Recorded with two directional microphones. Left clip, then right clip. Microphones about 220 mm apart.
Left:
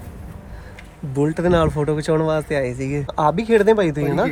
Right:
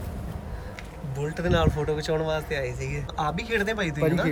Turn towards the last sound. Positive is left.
turn(degrees=5)  # may be behind; listen again after turning